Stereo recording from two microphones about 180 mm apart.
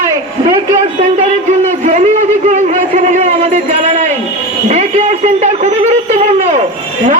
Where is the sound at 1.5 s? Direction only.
40° right (ahead or behind).